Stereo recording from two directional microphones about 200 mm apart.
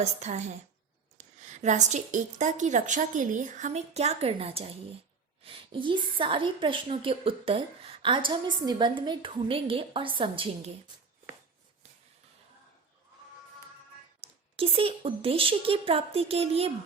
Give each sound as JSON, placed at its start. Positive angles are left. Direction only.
{"t": 0.0, "sound": "a woman's voice", "side_deg": -35}
{"t": 14.2, "sound": "a woman's voice", "side_deg": -30}